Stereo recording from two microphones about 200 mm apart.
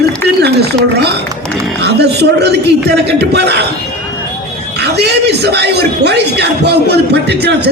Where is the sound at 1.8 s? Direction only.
55° right (ahead or behind).